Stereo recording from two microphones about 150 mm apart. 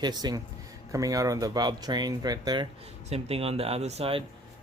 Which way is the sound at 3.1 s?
40° right (ahead or behind).